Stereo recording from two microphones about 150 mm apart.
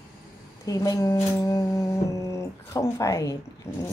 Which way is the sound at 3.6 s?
15° left (ahead or behind).